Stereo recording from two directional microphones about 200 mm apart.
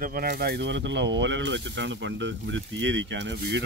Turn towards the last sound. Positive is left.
turn(degrees=-60)  # may be behind; listen again after turning